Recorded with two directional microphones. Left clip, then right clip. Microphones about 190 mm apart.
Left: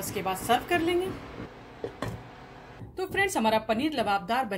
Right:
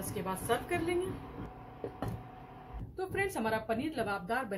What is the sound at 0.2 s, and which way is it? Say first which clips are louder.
Speech: left 8 dB; 50° left (ahead or behind).